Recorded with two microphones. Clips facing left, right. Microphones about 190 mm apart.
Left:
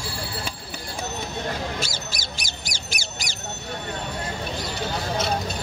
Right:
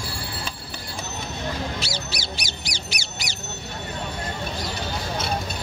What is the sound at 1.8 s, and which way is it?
Bird, 50° left (ahead or behind).